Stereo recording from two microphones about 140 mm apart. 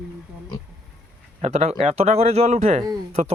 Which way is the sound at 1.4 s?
50° right (ahead or behind).